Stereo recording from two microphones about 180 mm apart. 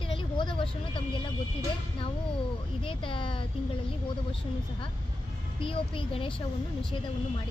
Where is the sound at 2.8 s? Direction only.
30° left (ahead or behind).